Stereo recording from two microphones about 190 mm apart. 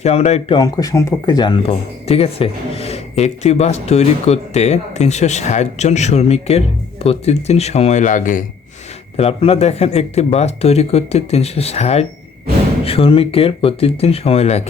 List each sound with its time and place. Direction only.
0.0 s speech: 35° left (ahead or behind)
0.5 s speech: 20° left (ahead or behind); by 8.4 s 45° left (ahead or behind)
9.1 s speech: 30° left (ahead or behind)